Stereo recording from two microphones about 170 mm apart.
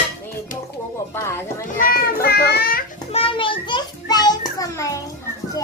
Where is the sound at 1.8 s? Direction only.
60° left (ahead or behind).